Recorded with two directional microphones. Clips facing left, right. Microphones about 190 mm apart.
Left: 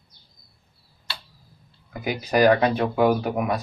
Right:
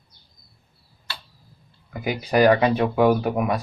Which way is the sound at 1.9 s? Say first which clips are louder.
Right 1 dB; 10° right (ahead or behind).